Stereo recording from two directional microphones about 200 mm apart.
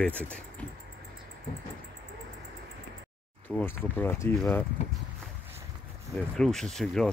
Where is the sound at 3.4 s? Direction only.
10° left (ahead or behind).